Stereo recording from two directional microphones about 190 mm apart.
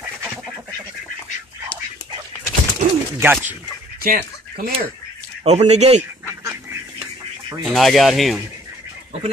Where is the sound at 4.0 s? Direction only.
50° right (ahead or behind).